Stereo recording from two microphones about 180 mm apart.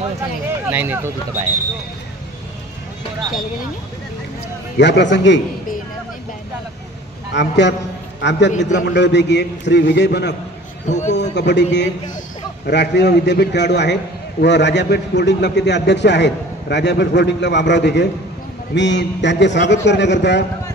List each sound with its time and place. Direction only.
0.7 s speech: 10° right (ahead or behind)
4.7 s a man's voice: 75° left (ahead or behind)
7.3 s a man's voice: 75° left (ahead or behind)
8.5 s a man's voice: 40° left (ahead or behind)
8.7 s a man's voice: 75° left (ahead or behind)
10.9 s a man's voice: 40° left (ahead or behind)
11.3 s a man's voice: 75° left (ahead or behind)